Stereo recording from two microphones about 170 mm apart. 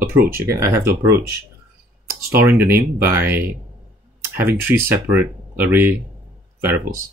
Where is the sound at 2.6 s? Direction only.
10° right (ahead or behind).